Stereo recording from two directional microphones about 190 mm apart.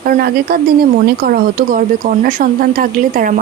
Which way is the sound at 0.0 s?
50° right (ahead or behind).